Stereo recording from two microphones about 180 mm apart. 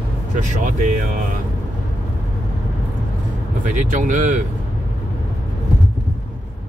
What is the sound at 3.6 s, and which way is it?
Speech, 45° right (ahead or behind).